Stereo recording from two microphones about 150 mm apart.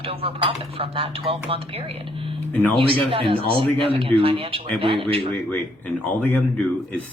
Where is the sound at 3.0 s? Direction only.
35° right (ahead or behind).